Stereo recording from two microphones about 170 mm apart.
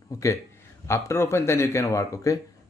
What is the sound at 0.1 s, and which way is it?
Speech, 20° left (ahead or behind).